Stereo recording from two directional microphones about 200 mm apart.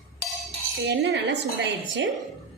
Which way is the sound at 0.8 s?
60° right (ahead or behind).